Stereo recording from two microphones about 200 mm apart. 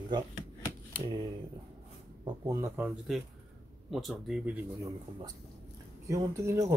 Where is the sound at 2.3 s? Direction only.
15° right (ahead or behind).